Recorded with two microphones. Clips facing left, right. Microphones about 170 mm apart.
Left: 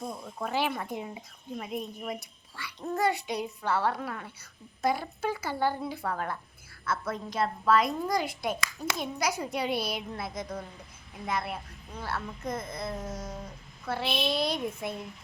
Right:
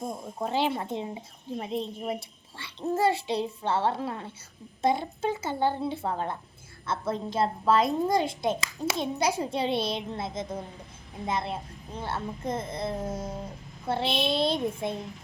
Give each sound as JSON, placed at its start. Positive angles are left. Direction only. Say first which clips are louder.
{"t": 0.3, "sound": "a woman's voice", "louder": "right 3 dB", "side_deg": -25}